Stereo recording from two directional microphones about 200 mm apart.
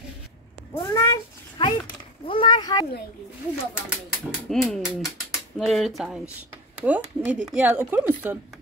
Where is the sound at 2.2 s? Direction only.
25° left (ahead or behind).